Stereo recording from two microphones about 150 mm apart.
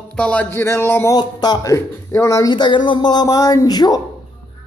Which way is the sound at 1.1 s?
25° left (ahead or behind).